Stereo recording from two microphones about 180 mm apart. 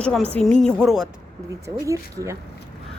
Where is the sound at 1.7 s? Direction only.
15° right (ahead or behind).